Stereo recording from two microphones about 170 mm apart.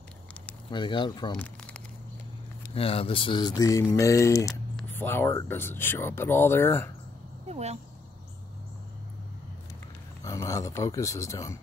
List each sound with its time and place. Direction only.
0.7 s speech: 30° left (ahead or behind)
1.3 s crumpling: 5° left (ahead or behind)
2.7 s speech: 35° left (ahead or behind); by 6.9 s 15° left (ahead or behind)
7.4 s speech: 40° right (ahead or behind)
10.2 s speech: 20° left (ahead or behind)